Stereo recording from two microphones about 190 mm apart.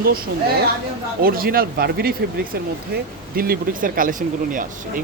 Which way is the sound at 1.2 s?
50° right (ahead or behind).